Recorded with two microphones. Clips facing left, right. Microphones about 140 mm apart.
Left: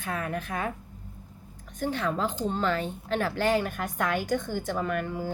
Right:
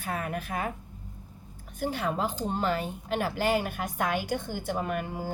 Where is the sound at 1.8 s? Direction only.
10° right (ahead or behind).